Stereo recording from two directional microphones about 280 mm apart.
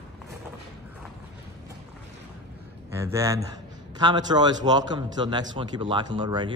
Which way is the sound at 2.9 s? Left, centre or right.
Centre.